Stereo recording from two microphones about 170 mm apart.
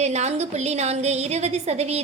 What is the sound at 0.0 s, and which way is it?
A woman's voice, 40° right (ahead or behind).